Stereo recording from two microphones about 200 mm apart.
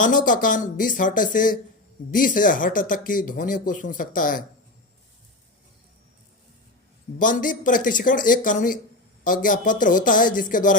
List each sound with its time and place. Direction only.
0.0 s speech: 40° left (ahead or behind)
7.2 s speech: 40° left (ahead or behind)